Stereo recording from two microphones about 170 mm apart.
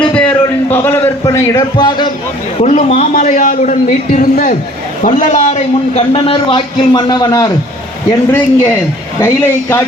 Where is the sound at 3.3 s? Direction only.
50° left (ahead or behind); by 7.5 s 25° left (ahead or behind).